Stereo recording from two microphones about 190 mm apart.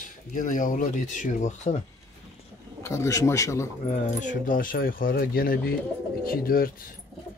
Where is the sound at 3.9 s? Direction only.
40° left (ahead or behind).